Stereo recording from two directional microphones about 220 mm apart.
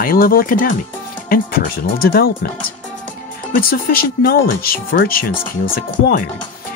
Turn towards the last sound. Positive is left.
turn(degrees=40)  # may be behind; listen again after turning